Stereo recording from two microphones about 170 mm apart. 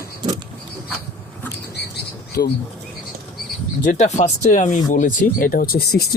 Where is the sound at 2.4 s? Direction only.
65° left (ahead or behind).